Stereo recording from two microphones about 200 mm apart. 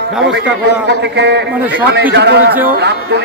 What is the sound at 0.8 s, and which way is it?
Speech, 60° right (ahead or behind).